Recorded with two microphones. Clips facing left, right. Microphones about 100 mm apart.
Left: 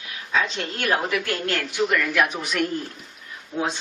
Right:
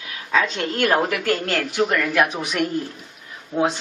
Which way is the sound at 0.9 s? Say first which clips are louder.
Right 4 dB; 45° right (ahead or behind).